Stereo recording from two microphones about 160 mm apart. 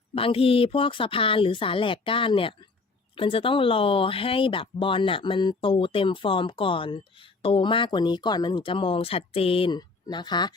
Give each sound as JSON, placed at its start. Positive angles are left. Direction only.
{"t": 0.1, "sound": "speech", "side_deg": 35}